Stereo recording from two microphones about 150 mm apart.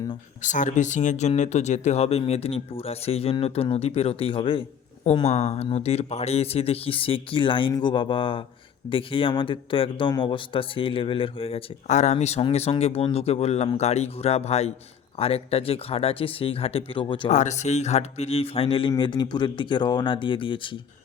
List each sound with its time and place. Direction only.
0.4 s speech: 55° left (ahead or behind); by 4.6 s 35° left (ahead or behind)
5.2 s a man's voice: 45° left (ahead or behind)
11.9 s a man's voice: 50° left (ahead or behind); by 17.2 s 35° left (ahead or behind)
17.2 s a man's voice: 50° left (ahead or behind); by 20.6 s 35° left (ahead or behind)